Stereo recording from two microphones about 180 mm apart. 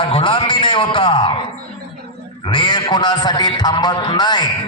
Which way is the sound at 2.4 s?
25° left (ahead or behind).